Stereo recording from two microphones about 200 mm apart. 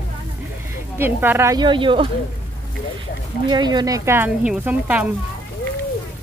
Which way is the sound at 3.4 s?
20° right (ahead or behind).